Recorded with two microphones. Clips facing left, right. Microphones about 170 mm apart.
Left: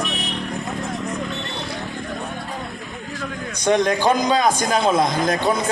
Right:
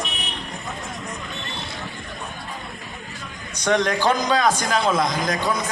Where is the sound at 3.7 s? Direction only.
20° left (ahead or behind).